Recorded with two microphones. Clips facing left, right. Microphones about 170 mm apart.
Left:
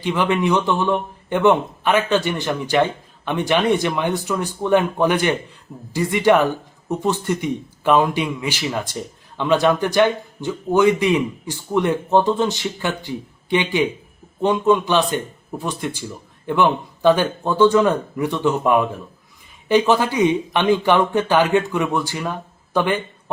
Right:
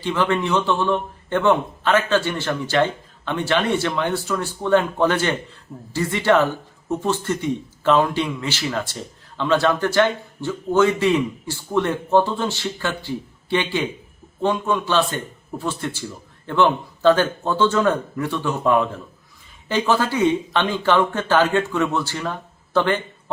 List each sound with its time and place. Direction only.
0.0 s a man's voice: 15° left (ahead or behind)